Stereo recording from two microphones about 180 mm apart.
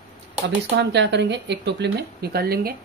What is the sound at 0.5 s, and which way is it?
Speech, 75° right (ahead or behind).